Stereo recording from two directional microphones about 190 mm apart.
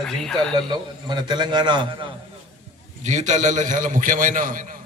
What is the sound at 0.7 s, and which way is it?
A man's voice, 25° right (ahead or behind).